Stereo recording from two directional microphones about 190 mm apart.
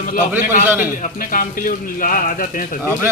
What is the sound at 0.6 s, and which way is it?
Speech, 10° right (ahead or behind).